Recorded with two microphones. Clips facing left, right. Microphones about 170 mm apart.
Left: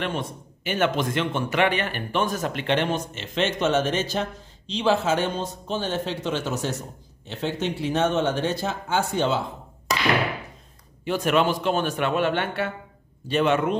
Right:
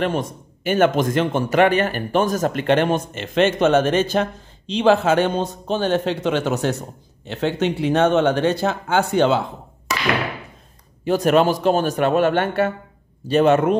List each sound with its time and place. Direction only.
0.0 s a man's voice: 45° right (ahead or behind); by 9.4 s 70° right (ahead or behind)
11.1 s a man's voice: 40° right (ahead or behind)